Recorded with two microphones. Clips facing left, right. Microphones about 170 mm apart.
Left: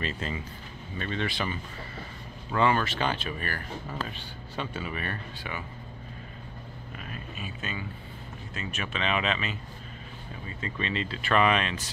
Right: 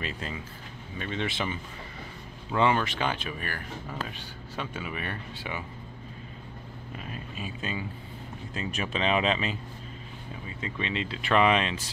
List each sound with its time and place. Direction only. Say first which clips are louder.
0.0 s speech: left 2 dB; 5° right (ahead or behind)
7.1 s a sound: right 2 dB; 30° right (ahead or behind)
8.5 s speech: right 3 dB; 30° right (ahead or behind)
10.6 s speech: even; 15° right (ahead or behind)